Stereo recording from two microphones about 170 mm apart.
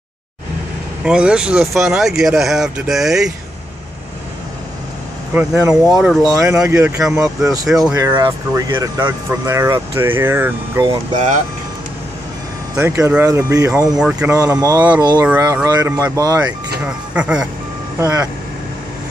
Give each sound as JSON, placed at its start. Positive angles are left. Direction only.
{"t": 1.0, "sound": "speech", "side_deg": -5}
{"t": 5.3, "sound": "speech", "side_deg": -10}
{"t": 6.3, "sound": "speech", "side_deg": -20}
{"t": 6.6, "sound": "speech", "side_deg": -5}
{"t": 7.9, "sound": "speech", "side_deg": -20}
{"t": 12.7, "sound": "speech", "side_deg": -15}
{"t": 13.9, "sound": "speech", "side_deg": -5}
{"t": 14.3, "sound": "speech", "side_deg": -20}
{"t": 16.8, "sound": "speech", "side_deg": -5}
{"t": 17.9, "sound": "speech", "side_deg": -20}